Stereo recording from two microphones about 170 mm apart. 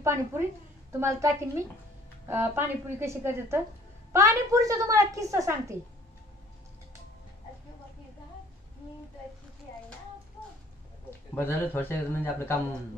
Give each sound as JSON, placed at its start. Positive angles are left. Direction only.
{"t": 0.0, "sound": "a woman's voice", "side_deg": -15}
{"t": 11.3, "sound": "speech", "side_deg": 10}